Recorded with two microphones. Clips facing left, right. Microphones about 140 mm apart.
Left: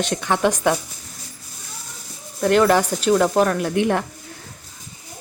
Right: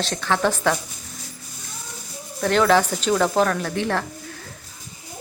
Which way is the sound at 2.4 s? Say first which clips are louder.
Left 2 dB; 5° left (ahead or behind).